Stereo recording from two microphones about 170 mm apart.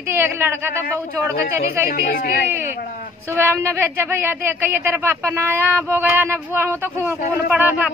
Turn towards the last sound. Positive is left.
turn(degrees=-10)  # may be behind; listen again after turning